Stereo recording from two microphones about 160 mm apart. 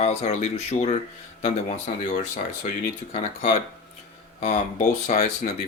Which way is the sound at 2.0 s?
50° left (ahead or behind).